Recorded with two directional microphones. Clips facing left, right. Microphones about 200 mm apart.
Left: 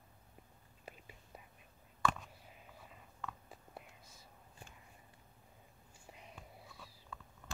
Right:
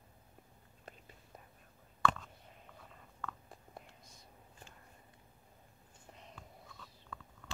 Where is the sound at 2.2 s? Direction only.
5° left (ahead or behind).